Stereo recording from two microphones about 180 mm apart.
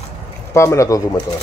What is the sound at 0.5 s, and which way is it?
Speech, 15° left (ahead or behind).